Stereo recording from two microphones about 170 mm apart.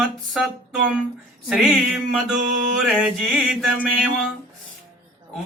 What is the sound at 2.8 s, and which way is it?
Mantra, 5° right (ahead or behind).